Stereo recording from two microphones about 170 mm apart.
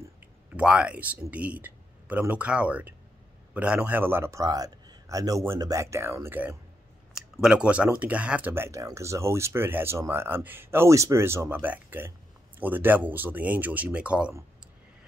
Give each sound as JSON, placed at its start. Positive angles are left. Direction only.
{"t": 0.6, "sound": "speech", "side_deg": -5}